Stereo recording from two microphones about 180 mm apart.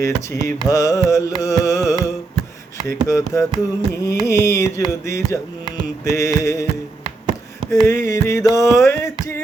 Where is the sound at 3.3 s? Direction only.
20° left (ahead or behind).